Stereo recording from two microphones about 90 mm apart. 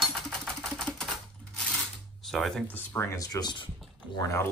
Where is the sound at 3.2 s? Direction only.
50° left (ahead or behind).